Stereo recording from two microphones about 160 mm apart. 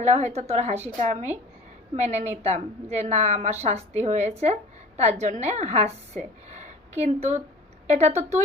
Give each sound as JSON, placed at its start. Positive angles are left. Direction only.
{"t": 0.0, "sound": "a woman's voice", "side_deg": -45}